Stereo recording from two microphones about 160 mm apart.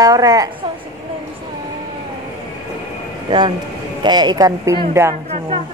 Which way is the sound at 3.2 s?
30° right (ahead or behind).